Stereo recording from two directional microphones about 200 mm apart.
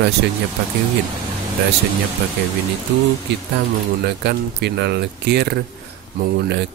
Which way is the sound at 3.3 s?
60° right (ahead or behind).